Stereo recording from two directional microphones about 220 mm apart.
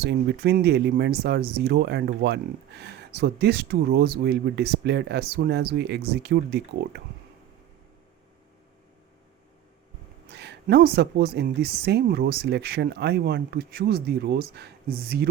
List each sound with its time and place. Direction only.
0.0 s speech: 50° right (ahead or behind)
10.2 s speech: 50° right (ahead or behind)